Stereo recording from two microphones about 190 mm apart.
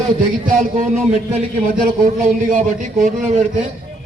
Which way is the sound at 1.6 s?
45° right (ahead or behind).